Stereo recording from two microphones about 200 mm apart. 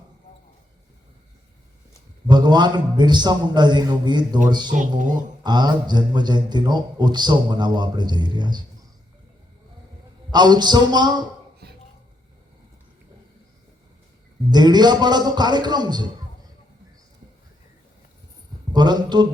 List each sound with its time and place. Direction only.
2.2 s a man's voice: 20° right (ahead or behind)
4.9 s speech: 40° right (ahead or behind)
5.4 s a man's voice: 20° right (ahead or behind)
10.3 s a man's voice: 20° right (ahead or behind)
11.6 s a sound: 55° right (ahead or behind)
14.5 s a man's voice: 20° right (ahead or behind)
18.7 s a man's voice: 20° right (ahead or behind)